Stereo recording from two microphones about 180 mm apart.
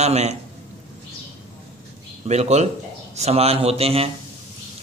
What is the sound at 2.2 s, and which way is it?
A man's voice, 40° right (ahead or behind).